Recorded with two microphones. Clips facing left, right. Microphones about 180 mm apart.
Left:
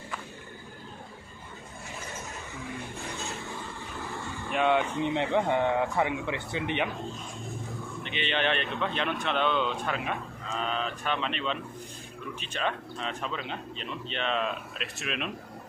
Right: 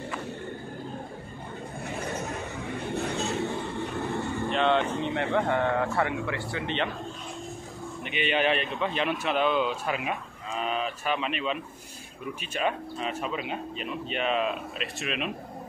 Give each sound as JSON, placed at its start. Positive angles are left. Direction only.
{"t": 1.9, "sound": "train", "side_deg": -65}
{"t": 2.9, "sound": "a sound", "side_deg": -65}
{"t": 4.5, "sound": "speech", "side_deg": 10}
{"t": 8.0, "sound": "speech", "side_deg": -10}